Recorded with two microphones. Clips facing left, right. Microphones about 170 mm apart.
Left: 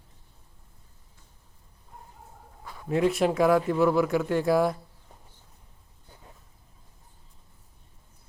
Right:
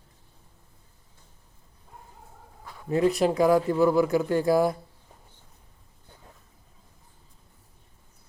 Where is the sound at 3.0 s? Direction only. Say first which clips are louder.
Right 1 dB; centre (ahead or behind).